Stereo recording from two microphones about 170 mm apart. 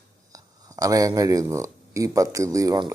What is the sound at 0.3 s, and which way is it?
Speech, 20° right (ahead or behind).